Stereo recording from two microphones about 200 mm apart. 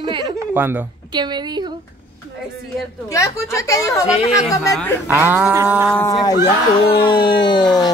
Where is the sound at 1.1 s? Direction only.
20° right (ahead or behind).